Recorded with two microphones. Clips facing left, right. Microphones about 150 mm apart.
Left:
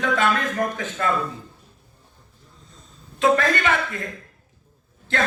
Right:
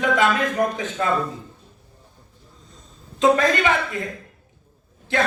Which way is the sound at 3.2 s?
20° right (ahead or behind).